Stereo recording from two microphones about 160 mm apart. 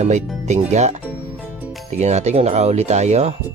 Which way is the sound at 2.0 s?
45° right (ahead or behind).